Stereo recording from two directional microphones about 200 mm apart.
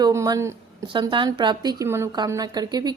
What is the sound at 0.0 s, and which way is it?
Speech, 15° right (ahead or behind).